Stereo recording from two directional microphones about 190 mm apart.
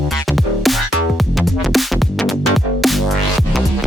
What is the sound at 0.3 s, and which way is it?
Music, centre (ahead or behind).